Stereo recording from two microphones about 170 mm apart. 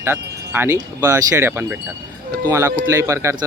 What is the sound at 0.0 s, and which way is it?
Speech, 15° right (ahead or behind).